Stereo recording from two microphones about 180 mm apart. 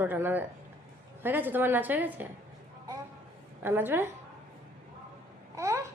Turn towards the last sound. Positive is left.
turn(degrees=-15)  # may be behind; listen again after turning